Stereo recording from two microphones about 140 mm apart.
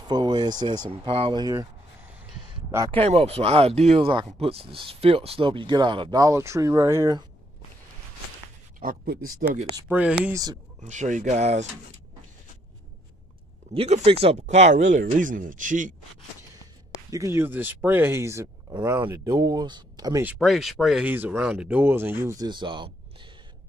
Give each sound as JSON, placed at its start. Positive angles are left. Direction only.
{"t": 0.1, "sound": "speech", "side_deg": -30}
{"t": 2.9, "sound": "speech", "side_deg": -40}
{"t": 4.1, "sound": "speech", "side_deg": -40}
{"t": 8.7, "sound": "speech", "side_deg": -90}
{"t": 9.8, "sound": "speech", "side_deg": -10}
{"t": 10.3, "sound": "speech", "side_deg": -30}
{"t": 10.8, "sound": "speech", "side_deg": -60}
{"t": 13.7, "sound": "speech", "side_deg": -50}
{"t": 17.1, "sound": "speech", "side_deg": -20}
{"t": 20.3, "sound": "speech", "side_deg": 0}
{"t": 21.0, "sound": "speech", "side_deg": -15}